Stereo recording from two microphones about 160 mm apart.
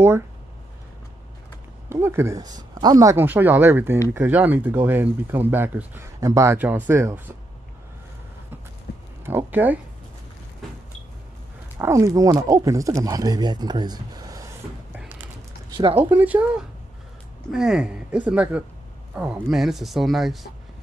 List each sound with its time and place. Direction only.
1.9 s speech: 15° right (ahead or behind)
9.2 s speech: 15° right (ahead or behind)
11.8 s speech: 20° right (ahead or behind)
15.7 s speech: 35° right (ahead or behind)
16.1 s speech: 10° right (ahead or behind)